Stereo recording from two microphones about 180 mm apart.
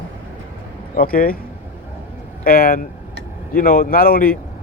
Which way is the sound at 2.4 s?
55° left (ahead or behind).